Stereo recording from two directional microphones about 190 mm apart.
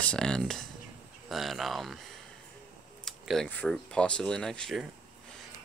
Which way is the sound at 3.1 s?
Centre (ahead or behind).